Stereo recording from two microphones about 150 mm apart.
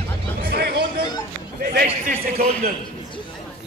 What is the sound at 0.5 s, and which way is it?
Speech, 90° right.